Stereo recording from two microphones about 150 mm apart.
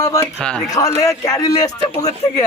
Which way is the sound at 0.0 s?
20° left (ahead or behind).